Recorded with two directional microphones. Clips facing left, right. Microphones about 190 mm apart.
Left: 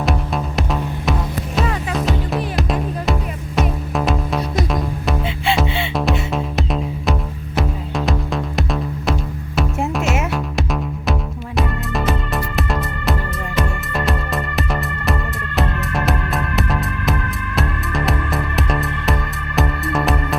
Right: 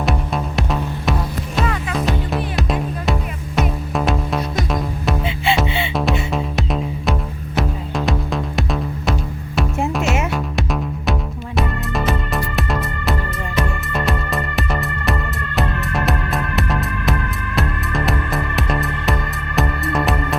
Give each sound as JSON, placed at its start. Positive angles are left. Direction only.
{"t": 0.0, "sound": "music", "side_deg": 0}